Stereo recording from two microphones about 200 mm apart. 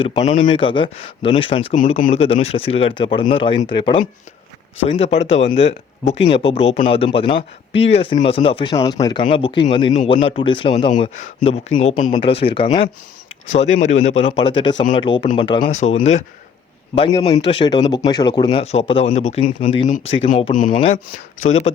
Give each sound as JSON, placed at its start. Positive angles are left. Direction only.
{"t": 0.0, "sound": "speech", "side_deg": 30}
{"t": 0.4, "sound": "speech", "side_deg": 25}
{"t": 1.7, "sound": "speech", "side_deg": 40}
{"t": 8.7, "sound": "speech", "side_deg": 15}
{"t": 15.6, "sound": "speech", "side_deg": 35}
{"t": 20.5, "sound": "speech", "side_deg": 40}